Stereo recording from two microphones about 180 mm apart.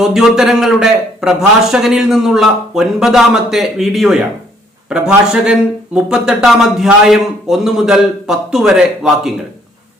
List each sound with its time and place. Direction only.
0.0 s a man's voice: centre (ahead or behind)